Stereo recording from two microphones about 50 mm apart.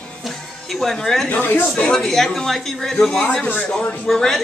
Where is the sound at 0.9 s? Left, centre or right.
Centre.